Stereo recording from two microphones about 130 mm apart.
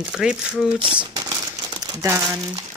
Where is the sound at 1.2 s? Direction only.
30° right (ahead or behind).